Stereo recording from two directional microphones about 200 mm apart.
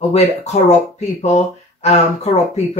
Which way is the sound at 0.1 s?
35° left (ahead or behind).